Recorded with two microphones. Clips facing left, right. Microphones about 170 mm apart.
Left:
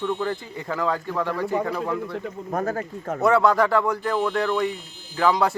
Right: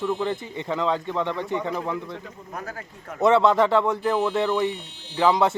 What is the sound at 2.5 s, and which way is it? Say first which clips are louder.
Speech: left 10 dB; 50° left (ahead or behind).